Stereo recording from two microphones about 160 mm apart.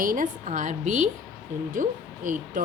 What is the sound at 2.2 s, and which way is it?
Speech, 55° right (ahead or behind).